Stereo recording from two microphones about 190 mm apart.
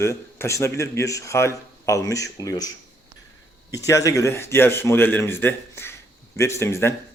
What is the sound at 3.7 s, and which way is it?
Speech, 15° left (ahead or behind).